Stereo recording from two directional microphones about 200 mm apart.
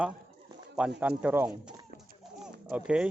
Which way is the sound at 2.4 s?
5° right (ahead or behind).